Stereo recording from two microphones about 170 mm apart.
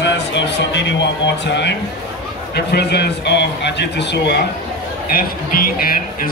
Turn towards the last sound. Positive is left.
turn(degrees=60)  # may be behind; listen again after turning